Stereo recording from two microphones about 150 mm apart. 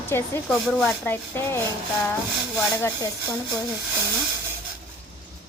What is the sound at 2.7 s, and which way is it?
Speech, 15° left (ahead or behind).